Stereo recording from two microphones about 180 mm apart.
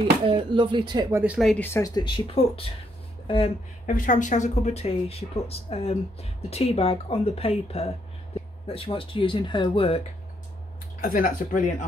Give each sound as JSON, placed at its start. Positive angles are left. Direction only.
{"t": 0.3, "sound": "speech", "side_deg": -30}
{"t": 1.2, "sound": "speech", "side_deg": -5}
{"t": 1.5, "sound": "speech", "side_deg": 10}
{"t": 3.8, "sound": "speech", "side_deg": 45}
{"t": 11.0, "sound": "speech", "side_deg": 50}